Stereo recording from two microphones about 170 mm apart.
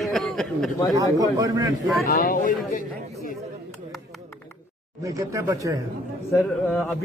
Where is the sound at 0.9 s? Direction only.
20° right (ahead or behind).